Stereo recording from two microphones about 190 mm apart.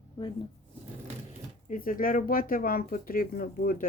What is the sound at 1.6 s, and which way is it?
Speech, 45° left (ahead or behind).